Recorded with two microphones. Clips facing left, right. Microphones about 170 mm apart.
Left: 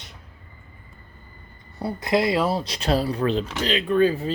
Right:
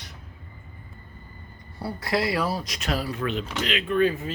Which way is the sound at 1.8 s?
20° left (ahead or behind).